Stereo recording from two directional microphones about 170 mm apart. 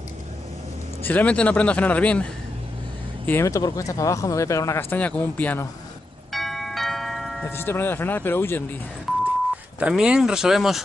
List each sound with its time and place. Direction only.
1.0 s speech: 10° left (ahead or behind)
3.3 s speech: 15° left (ahead or behind)
6.3 s bell: centre (ahead or behind)
7.4 s speech: 15° left (ahead or behind)
9.8 s speech: 5° right (ahead or behind)